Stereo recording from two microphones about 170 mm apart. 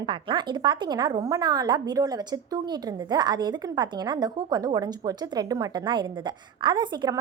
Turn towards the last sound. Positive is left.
turn(degrees=-25)  # may be behind; listen again after turning